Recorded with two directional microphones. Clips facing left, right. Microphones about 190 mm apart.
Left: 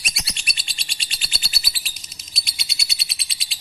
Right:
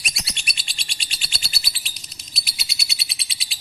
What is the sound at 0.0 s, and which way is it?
Bird, centre (ahead or behind).